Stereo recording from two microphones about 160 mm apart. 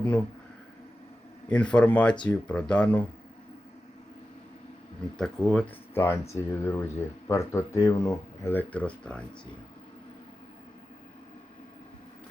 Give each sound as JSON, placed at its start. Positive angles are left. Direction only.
{"t": 1.5, "sound": "speech", "side_deg": 5}
{"t": 5.1, "sound": "speech", "side_deg": 5}